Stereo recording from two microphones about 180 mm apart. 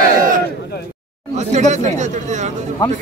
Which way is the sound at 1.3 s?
40° right (ahead or behind).